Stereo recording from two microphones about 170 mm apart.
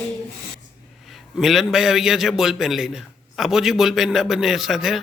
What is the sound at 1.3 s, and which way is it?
A man's voice, centre (ahead or behind).